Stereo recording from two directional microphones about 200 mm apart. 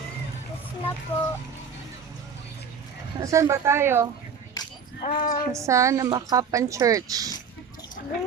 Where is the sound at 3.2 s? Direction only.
15° right (ahead or behind).